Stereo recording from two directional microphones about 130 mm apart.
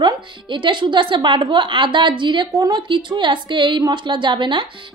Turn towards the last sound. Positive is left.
turn(degrees=-35)  # may be behind; listen again after turning